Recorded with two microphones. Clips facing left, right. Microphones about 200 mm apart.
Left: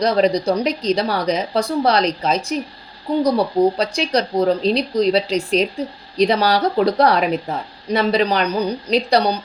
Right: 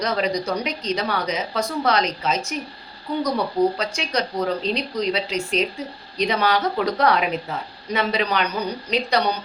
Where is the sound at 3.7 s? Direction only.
35° left (ahead or behind).